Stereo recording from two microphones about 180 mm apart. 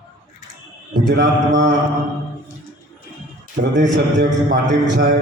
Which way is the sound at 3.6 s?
75° right (ahead or behind).